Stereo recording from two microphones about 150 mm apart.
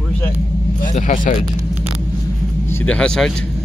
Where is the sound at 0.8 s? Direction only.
55° left (ahead or behind).